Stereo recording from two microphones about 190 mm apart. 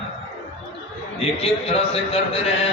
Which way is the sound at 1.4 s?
30° left (ahead or behind).